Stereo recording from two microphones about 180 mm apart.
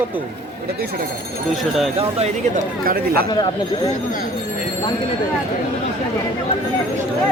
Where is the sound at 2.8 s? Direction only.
55° right (ahead or behind).